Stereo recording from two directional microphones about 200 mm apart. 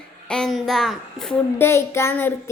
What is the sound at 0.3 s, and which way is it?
Speech, centre (ahead or behind).